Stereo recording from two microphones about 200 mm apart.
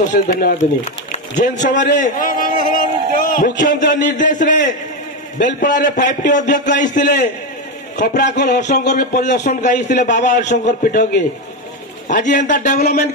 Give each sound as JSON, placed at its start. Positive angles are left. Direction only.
{"t": 0.1, "sound": "a man's voice", "side_deg": 45}